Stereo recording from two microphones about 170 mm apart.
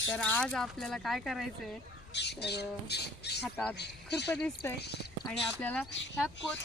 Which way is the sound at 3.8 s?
80° left.